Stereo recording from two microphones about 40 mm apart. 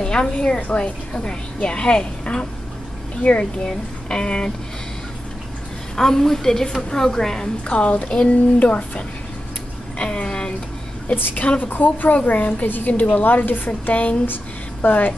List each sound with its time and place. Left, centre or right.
0.0 s a woman's voice: centre
3.6 s a woman's voice: centre
5.9 s a woman's voice: centre
7.6 s a woman's voice: left
8.5 s a woman's voice: left
9.9 s a sound: left
11.3 s a woman's voice: left
14.2 s speech: left